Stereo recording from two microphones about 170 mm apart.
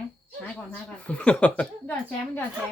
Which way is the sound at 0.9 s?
5° left (ahead or behind).